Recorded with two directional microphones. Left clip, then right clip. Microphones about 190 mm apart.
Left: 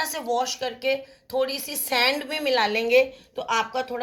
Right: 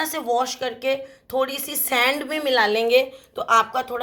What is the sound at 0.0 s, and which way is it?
Speech, 40° right (ahead or behind).